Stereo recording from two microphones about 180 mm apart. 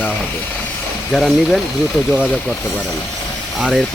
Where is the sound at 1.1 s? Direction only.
Centre (ahead or behind).